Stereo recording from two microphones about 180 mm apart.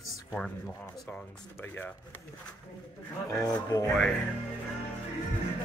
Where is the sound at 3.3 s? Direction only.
20° left (ahead or behind).